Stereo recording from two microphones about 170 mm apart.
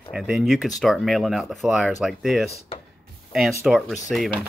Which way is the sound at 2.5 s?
35° left (ahead or behind).